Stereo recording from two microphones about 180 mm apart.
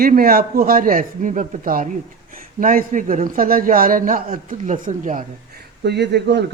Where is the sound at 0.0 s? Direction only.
55° right (ahead or behind).